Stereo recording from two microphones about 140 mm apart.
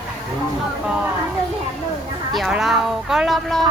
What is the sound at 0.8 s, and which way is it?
Speech, 10° right (ahead or behind).